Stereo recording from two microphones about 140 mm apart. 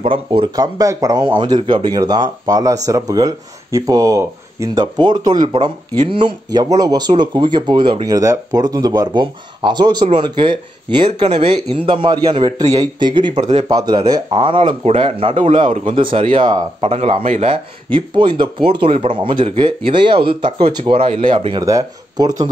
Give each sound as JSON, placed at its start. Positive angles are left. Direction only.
{"t": 0.0, "sound": "speech", "side_deg": -40}
{"t": 16.9, "sound": "speech", "side_deg": -45}
{"t": 21.6, "sound": "speech", "side_deg": -25}